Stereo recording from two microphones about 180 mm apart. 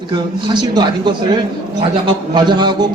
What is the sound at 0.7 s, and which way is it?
Speech, 25° right (ahead or behind).